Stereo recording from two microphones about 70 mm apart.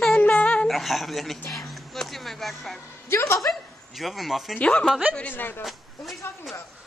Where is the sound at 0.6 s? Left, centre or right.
Centre.